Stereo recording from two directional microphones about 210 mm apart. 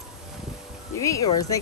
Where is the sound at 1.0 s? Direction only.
15° left (ahead or behind).